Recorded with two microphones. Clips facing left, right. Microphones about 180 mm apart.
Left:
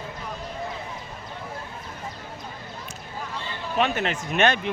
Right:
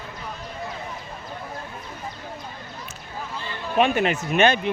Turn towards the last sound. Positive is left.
turn(degrees=0)  # may be behind; listen again after turning